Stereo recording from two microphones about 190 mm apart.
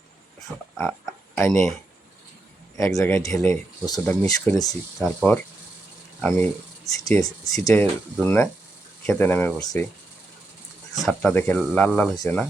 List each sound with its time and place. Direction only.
1.4 s speech: 5° left (ahead or behind)
2.7 s speech: 15° left (ahead or behind)
6.2 s speech: 5° left (ahead or behind)
6.8 s speech: 20° left (ahead or behind)
11.0 s speech: centre (ahead or behind)
12.1 s speech: 20° left (ahead or behind)